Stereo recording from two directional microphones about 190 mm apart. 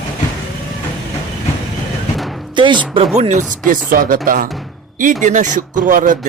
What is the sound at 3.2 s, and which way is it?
Speech, 40° right (ahead or behind).